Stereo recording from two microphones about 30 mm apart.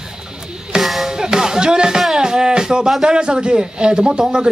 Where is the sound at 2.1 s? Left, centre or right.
Right.